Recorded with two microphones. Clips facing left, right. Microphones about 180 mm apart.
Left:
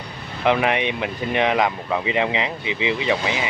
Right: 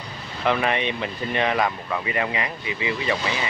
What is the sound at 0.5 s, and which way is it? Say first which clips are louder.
Speech: left 3 dB; 15° left (ahead or behind).